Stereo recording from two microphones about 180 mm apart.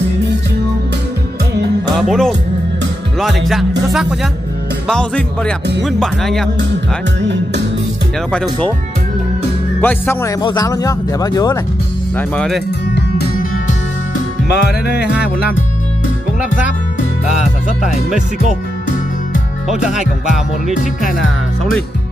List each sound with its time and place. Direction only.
2.0 s speech: centre (ahead or behind)
3.2 s music: centre (ahead or behind)
9.8 s speech: 10° left (ahead or behind)
10.4 s speech: 20° left (ahead or behind)
12.2 s music: 5° left (ahead or behind)
13.4 s music: 45° left (ahead or behind)
14.5 s music: 65° left (ahead or behind)
19.7 s music: 5° right (ahead or behind)